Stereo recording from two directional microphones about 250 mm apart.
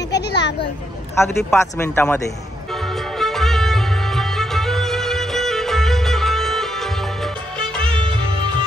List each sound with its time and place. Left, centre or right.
0.1 s a sound: left
1.1 s speech: centre
2.7 s music: centre